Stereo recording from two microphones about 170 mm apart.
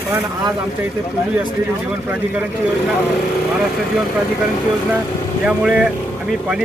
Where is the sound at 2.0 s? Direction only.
10° right (ahead or behind).